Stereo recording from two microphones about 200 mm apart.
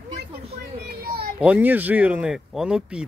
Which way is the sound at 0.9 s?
50° right (ahead or behind).